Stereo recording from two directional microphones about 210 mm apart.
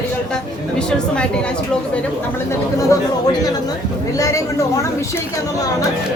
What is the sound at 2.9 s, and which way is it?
Speech, 20° left (ahead or behind).